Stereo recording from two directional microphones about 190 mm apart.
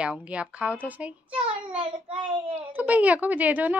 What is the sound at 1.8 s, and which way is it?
Child singing, 30° right (ahead or behind).